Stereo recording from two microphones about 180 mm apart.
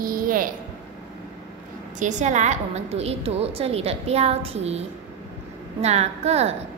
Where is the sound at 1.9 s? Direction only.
40° right (ahead or behind).